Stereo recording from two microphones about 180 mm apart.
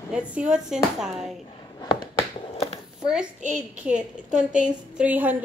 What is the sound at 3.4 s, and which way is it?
Speech, 45° right (ahead or behind).